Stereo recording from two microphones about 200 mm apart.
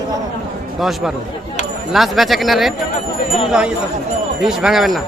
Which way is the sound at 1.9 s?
Centre (ahead or behind).